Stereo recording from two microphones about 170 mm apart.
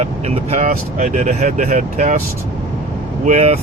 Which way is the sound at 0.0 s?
40° right (ahead or behind).